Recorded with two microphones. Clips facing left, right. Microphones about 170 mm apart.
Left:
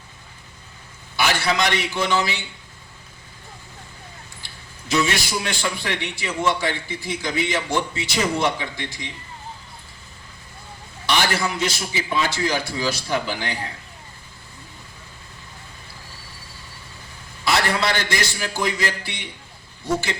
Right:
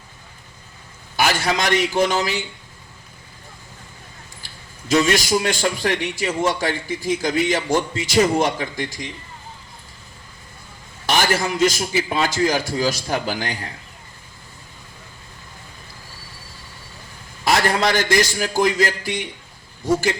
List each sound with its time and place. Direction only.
1.1 s a man's voice: 45° right (ahead or behind)
4.9 s a man's voice: 45° right (ahead or behind)
11.0 s a man's voice: 45° right (ahead or behind)
17.4 s a man's voice: 45° right (ahead or behind)